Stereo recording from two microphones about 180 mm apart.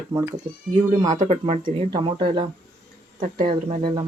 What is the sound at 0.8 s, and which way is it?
Speech, 25° right (ahead or behind).